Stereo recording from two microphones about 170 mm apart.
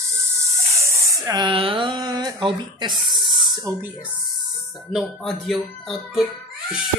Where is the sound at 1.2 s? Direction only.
25° right (ahead or behind).